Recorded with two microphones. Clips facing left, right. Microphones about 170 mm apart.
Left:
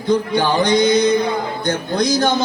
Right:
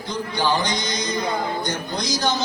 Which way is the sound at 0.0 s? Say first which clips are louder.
Left 8 dB; 55° left (ahead or behind).